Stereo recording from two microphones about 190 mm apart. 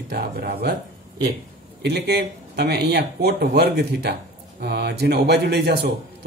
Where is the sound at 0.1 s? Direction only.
55° right (ahead or behind).